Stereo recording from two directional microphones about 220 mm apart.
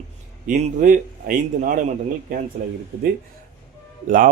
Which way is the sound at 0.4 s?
35° right (ahead or behind).